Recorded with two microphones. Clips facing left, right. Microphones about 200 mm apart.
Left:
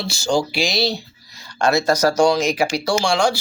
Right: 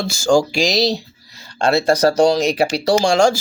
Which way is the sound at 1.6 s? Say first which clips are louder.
Right 2 dB; 30° right (ahead or behind).